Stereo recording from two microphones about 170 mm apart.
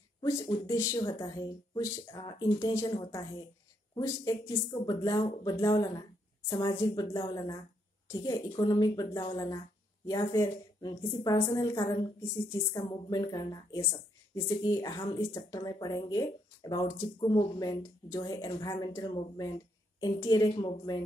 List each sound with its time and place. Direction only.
0.2 s a woman's voice: 20° left (ahead or behind)
11.8 s speech: 30° left (ahead or behind)